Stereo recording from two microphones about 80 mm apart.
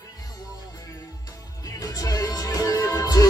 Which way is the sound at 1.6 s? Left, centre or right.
Left.